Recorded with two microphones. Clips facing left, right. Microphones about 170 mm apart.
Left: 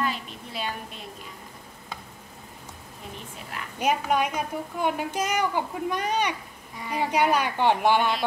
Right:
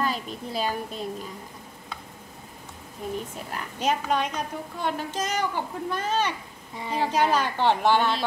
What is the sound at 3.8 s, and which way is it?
A woman's voice, 10° left (ahead or behind).